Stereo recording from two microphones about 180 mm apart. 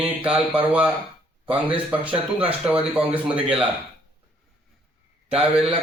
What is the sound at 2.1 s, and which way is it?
Speech, 30° right (ahead or behind).